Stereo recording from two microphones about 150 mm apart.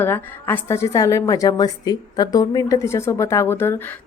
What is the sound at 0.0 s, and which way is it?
A woman's voice, 15° left (ahead or behind).